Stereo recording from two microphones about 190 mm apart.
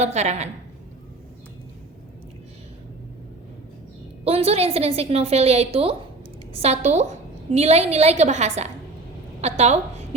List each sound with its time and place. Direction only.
0.0 s a woman's voice: 35° right (ahead or behind)
4.2 s a woman's voice: 30° right (ahead or behind)